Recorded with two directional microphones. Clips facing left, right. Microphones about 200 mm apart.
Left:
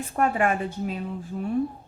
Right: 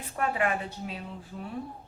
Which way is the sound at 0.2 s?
45° left (ahead or behind).